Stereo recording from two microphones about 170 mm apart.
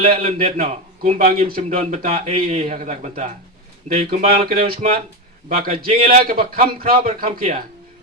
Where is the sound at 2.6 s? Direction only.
45° right (ahead or behind).